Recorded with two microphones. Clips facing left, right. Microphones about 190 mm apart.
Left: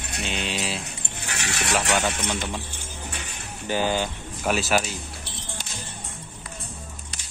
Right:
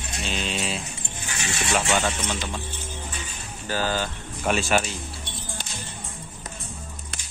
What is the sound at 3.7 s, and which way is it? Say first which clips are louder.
Speech: left 2 dB; 15° left (ahead or behind).